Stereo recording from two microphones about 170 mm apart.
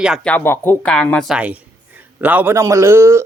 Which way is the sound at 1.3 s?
10° right (ahead or behind).